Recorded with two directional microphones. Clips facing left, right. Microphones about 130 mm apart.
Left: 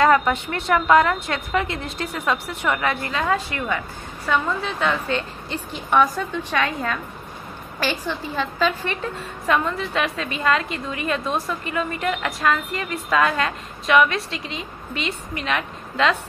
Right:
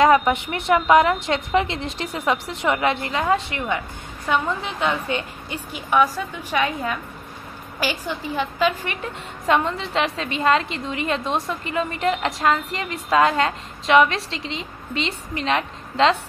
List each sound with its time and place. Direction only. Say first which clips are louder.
0.0 s a woman's voice: right 1 dB; 15° right (ahead or behind)
9.5 s a woman's voice: right 1 dB; 25° right (ahead or behind)